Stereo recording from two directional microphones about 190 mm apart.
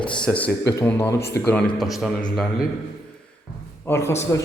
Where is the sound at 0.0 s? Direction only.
5° left (ahead or behind).